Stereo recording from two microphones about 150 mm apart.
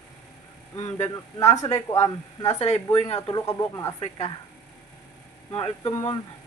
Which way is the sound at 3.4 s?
25° left (ahead or behind).